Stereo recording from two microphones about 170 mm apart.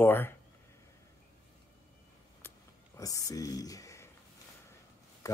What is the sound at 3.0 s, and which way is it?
Speech, 20° left (ahead or behind).